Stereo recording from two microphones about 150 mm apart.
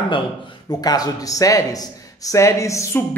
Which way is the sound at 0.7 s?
25° left (ahead or behind).